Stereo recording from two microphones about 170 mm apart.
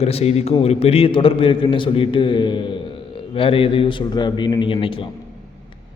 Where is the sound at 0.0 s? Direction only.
40° left (ahead or behind).